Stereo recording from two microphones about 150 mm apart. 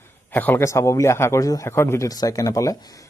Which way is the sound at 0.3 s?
10° left (ahead or behind).